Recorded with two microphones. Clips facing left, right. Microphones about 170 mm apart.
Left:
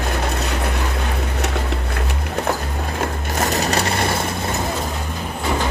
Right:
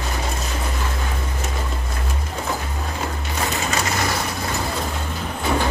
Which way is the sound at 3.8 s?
30° left (ahead or behind).